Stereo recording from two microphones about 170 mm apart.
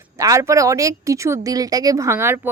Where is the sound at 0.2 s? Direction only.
20° right (ahead or behind).